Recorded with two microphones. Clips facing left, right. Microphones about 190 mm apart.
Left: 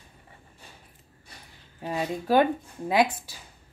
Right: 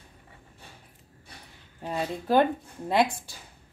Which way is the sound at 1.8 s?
5° left (ahead or behind).